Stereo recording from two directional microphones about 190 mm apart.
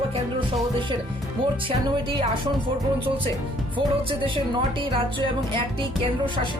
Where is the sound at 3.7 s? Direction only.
25° right (ahead or behind).